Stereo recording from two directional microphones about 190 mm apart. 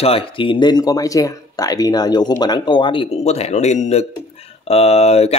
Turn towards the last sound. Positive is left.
turn(degrees=35)  # may be behind; listen again after turning